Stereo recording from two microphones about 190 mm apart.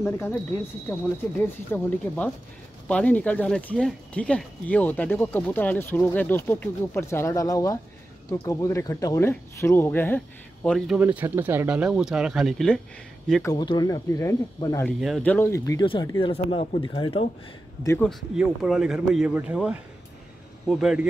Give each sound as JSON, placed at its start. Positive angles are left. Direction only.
{"t": 0.0, "sound": "speech", "side_deg": 15}
{"t": 1.7, "sound": "speech", "side_deg": 10}
{"t": 11.0, "sound": "speech", "side_deg": -10}
{"t": 13.4, "sound": "speech", "side_deg": 20}
{"t": 15.0, "sound": "speech", "side_deg": 0}
{"t": 18.0, "sound": "speech", "side_deg": -5}